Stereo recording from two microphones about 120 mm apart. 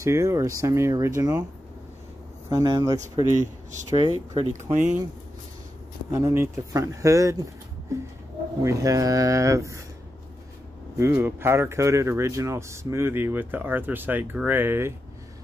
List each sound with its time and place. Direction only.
0.0 s speech: 25° right (ahead or behind)
2.5 s speech: 30° right (ahead or behind)
4.0 s speech: 35° right (ahead or behind)
4.5 s speech: 85° right
6.1 s speech: 20° right (ahead or behind)
8.6 s speech: 30° right (ahead or behind)
11.0 s speech: 20° right (ahead or behind)